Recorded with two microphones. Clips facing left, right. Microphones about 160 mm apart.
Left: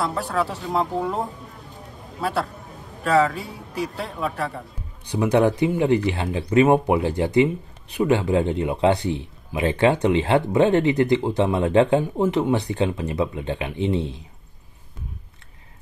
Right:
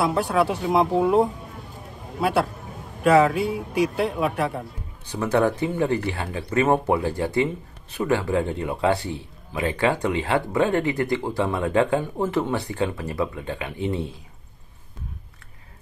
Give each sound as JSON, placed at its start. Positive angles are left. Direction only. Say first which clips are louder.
{"t": 0.2, "sound": "speech", "louder": "right 4 dB", "side_deg": -75}
{"t": 0.6, "sound": "speech", "louder": "right 4 dB", "side_deg": -20}
{"t": 3.3, "sound": "speech", "louder": "right 7 dB", "side_deg": -70}
{"t": 4.0, "sound": "speech", "louder": "right 4 dB", "side_deg": -20}
{"t": 5.0, "sound": "speech", "louder": "left 3 dB", "side_deg": 15}